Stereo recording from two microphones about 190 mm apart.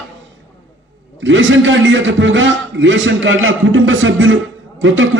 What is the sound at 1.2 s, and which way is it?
A man's voice, 85° right.